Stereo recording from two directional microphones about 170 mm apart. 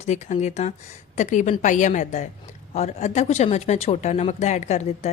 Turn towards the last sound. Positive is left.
turn(degrees=40)  # may be behind; listen again after turning